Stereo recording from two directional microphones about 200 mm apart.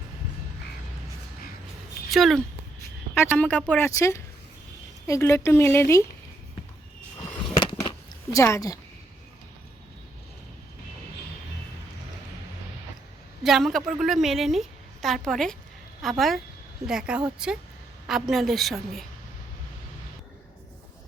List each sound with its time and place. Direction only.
2.0 s speech: centre (ahead or behind)
7.6 s a sound: 20° left (ahead or behind)
13.4 s a woman's voice: centre (ahead or behind)